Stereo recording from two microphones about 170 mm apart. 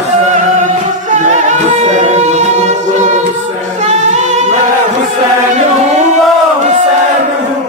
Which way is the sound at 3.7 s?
45° right (ahead or behind).